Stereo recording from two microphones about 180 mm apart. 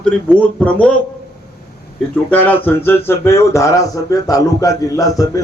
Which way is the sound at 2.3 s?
10° left (ahead or behind).